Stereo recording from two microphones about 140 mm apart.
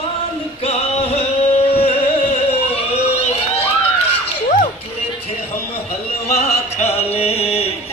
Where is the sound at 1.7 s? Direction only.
45° left (ahead or behind).